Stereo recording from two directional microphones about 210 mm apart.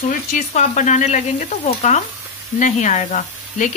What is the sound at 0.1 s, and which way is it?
Speech, 35° left (ahead or behind).